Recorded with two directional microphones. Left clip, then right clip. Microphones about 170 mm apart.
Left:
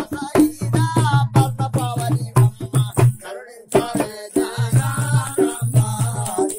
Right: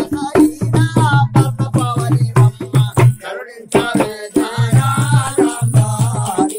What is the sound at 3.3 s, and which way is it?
Music, 40° left (ahead or behind).